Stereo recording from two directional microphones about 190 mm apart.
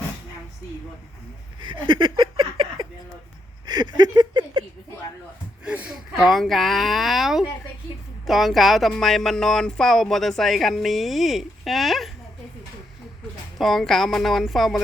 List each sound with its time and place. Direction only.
1.5 s a sound: 25° right (ahead or behind)
5.6 s speech: 5° right (ahead or behind)
13.6 s speech: centre (ahead or behind)